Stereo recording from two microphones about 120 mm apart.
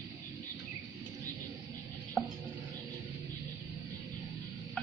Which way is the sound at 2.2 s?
Centre (ahead or behind).